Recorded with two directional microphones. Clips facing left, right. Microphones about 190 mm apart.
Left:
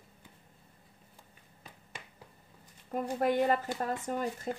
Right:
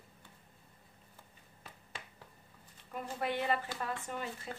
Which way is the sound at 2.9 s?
45° left (ahead or behind).